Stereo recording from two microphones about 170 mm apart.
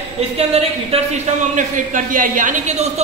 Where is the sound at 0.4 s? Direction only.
35° right (ahead or behind).